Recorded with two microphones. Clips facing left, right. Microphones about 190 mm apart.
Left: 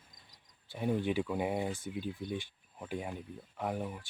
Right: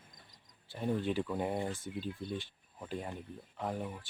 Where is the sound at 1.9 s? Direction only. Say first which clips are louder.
Left 1 dB; 15° left (ahead or behind).